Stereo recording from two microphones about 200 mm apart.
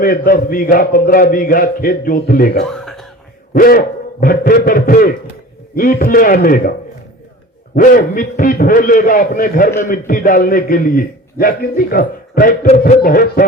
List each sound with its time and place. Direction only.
0.0 s a man's voice: 45° left (ahead or behind)
2.6 s whispering: centre (ahead or behind)
3.5 s a man's voice: 45° left (ahead or behind)
7.8 s a man's voice: 40° left (ahead or behind)